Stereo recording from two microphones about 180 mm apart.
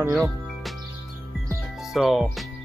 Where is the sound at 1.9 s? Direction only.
Centre (ahead or behind).